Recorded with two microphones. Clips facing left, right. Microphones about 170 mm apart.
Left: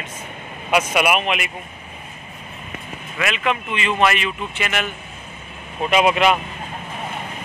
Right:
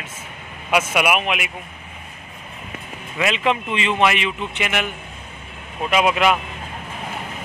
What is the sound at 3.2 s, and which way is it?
Speech, 25° right (ahead or behind).